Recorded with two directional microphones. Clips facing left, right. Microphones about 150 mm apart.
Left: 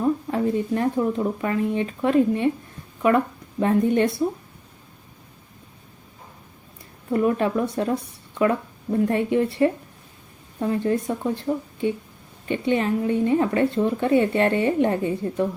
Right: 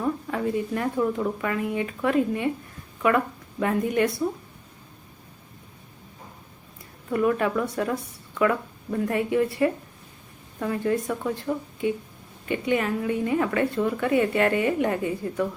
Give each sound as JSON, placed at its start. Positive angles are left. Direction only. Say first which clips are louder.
{"t": 0.0, "sound": "a woman's voice", "louder": "left 4 dB", "side_deg": 25}
{"t": 7.1, "sound": "a woman's voice", "louder": "left 2 dB", "side_deg": 25}